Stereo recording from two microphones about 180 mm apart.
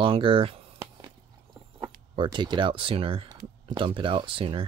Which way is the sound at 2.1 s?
25° right (ahead or behind).